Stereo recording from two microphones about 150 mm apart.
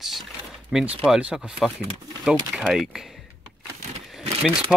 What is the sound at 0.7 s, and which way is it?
Speech, 5° right (ahead or behind).